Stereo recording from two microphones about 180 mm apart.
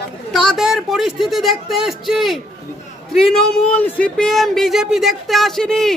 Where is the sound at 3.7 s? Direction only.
10° left (ahead or behind).